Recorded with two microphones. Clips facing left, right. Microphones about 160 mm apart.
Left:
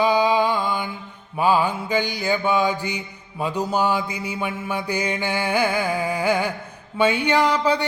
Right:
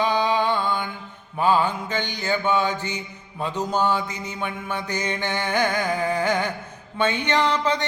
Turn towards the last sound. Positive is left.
turn(degrees=10)  # may be behind; listen again after turning